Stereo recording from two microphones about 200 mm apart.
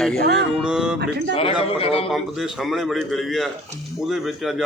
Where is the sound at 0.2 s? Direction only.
55° right (ahead or behind).